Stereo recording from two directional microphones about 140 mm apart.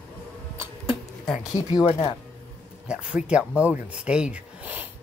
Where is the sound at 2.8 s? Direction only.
10° right (ahead or behind).